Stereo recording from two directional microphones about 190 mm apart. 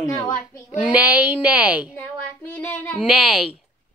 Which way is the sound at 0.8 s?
5° right (ahead or behind).